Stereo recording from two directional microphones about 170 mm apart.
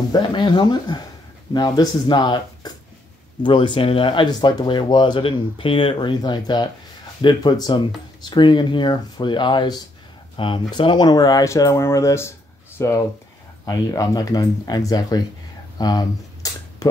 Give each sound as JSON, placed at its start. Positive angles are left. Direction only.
{"t": 0.1, "sound": "speech", "side_deg": 25}